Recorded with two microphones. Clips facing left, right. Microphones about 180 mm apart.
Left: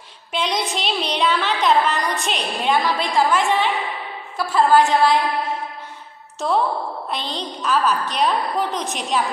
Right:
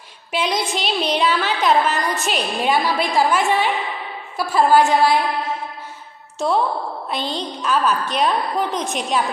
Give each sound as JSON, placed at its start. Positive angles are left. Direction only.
{"t": 0.3, "sound": "a woman's voice", "side_deg": -5}
{"t": 4.4, "sound": "a sound", "side_deg": -10}
{"t": 7.1, "sound": "a woman's voice", "side_deg": 0}